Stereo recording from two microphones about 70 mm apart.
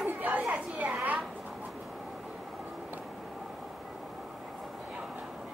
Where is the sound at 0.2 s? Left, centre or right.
Right.